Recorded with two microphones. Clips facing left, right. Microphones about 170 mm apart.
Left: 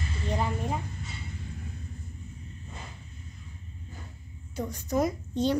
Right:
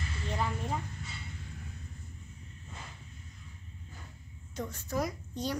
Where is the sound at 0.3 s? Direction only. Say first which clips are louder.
Left 4 dB; 20° left (ahead or behind).